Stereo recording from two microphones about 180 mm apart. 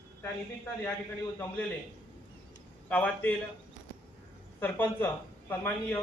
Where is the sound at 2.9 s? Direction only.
10° left (ahead or behind).